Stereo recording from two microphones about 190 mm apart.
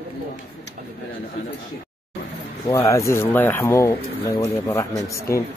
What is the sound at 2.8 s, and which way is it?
Speech, 15° left (ahead or behind).